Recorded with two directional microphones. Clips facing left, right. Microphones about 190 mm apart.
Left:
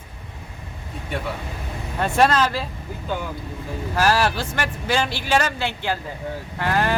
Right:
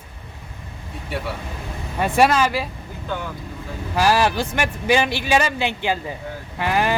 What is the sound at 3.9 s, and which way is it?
A man's voice, 15° right (ahead or behind).